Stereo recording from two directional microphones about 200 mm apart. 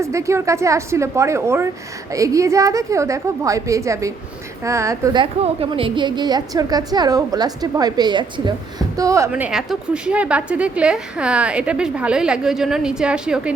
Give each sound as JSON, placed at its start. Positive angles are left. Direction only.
{"t": 0.0, "sound": "a woman's voice", "side_deg": -15}